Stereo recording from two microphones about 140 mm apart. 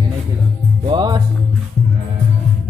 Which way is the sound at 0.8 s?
30° right (ahead or behind).